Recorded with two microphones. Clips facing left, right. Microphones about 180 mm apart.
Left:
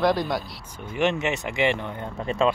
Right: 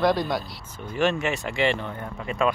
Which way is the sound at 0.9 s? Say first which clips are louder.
Even; 20° left (ahead or behind).